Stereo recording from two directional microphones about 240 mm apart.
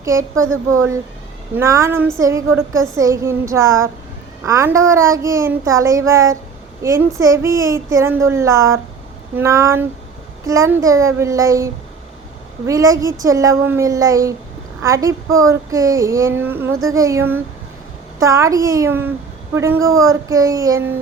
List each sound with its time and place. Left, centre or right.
0.0 s speech: centre
0.3 s speech: right
0.7 s a child's voice: centre